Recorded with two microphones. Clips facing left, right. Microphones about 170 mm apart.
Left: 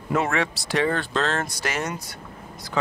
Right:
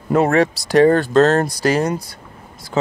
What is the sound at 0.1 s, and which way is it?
Speech, 40° right (ahead or behind).